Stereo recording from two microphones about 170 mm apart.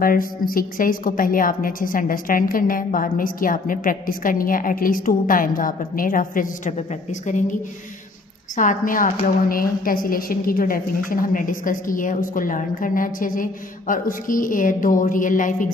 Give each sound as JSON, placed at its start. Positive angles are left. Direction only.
{"t": 0.0, "sound": "a woman's voice", "side_deg": 55}
{"t": 8.5, "sound": "a woman's voice", "side_deg": 50}